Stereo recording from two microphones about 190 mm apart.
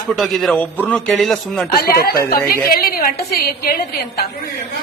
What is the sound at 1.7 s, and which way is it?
A woman's voice, 50° left (ahead or behind).